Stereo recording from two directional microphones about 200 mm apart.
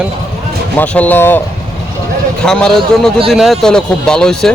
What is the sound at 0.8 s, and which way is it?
Speech, 10° left (ahead or behind).